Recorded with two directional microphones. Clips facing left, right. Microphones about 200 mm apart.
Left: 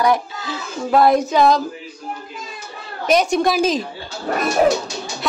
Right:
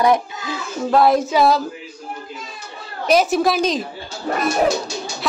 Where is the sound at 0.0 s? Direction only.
20° right (ahead or behind).